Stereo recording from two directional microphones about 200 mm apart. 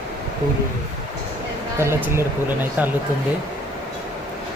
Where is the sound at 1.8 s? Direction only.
10° right (ahead or behind).